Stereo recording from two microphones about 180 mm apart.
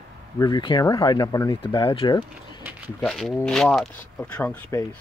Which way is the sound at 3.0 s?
Centre (ahead or behind).